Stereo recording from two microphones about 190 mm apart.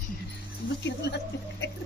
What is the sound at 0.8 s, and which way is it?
Speech, 65° left (ahead or behind).